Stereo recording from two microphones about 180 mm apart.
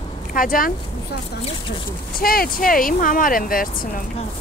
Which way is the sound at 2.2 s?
55° left (ahead or behind).